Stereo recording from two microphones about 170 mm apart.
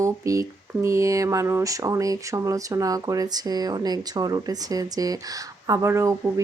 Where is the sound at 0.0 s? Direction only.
20° right (ahead or behind).